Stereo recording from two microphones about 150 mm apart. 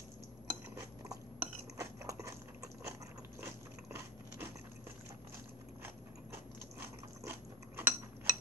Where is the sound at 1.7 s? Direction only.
20° right (ahead or behind).